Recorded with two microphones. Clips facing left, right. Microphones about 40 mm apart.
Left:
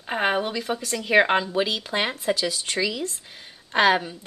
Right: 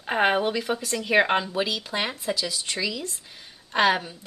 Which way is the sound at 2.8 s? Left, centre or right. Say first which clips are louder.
Left 3 dB; centre.